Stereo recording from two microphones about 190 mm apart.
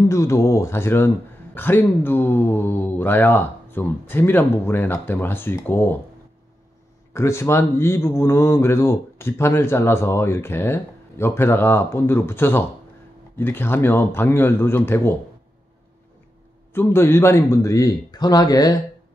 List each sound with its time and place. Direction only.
0.1 s a man's voice: 15° left (ahead or behind)
7.2 s a man's voice: 15° left (ahead or behind)
16.7 s a man's voice: 10° left (ahead or behind)